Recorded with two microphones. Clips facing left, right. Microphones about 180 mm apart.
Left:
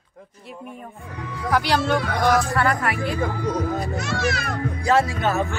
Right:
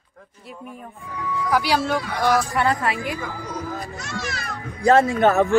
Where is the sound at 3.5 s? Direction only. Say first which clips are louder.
Left 6 dB; 60° left (ahead or behind).